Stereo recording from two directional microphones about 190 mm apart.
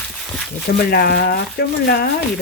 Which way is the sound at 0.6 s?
55° left (ahead or behind).